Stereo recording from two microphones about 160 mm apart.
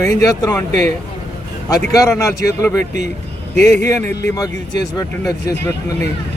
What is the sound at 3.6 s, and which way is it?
Speech, 50° right (ahead or behind).